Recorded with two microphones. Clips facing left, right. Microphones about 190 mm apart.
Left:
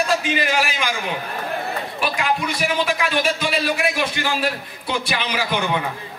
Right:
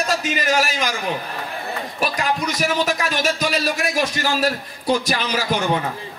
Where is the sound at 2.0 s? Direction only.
40° right (ahead or behind).